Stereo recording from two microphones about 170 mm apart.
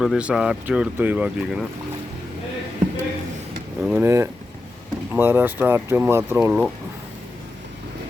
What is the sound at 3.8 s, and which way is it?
Speech, 5° right (ahead or behind).